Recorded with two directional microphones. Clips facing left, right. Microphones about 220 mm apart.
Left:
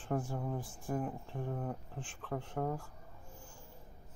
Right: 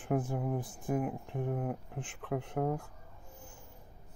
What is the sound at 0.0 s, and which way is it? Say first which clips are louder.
Speech: right 4 dB; 15° right (ahead or behind).